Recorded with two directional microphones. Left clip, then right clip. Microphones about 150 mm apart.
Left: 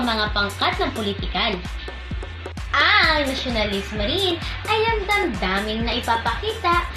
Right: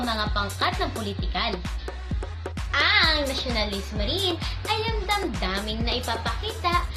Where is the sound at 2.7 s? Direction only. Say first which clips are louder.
Left 4 dB; 15° right (ahead or behind).